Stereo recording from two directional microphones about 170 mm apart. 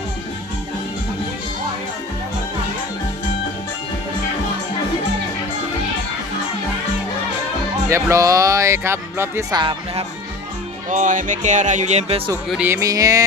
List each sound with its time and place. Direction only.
7.9 s speech: 15° right (ahead or behind)
9.6 s speech: 30° right (ahead or behind)
10.8 s speech: 45° right (ahead or behind)
12.5 s speech: 10° right (ahead or behind)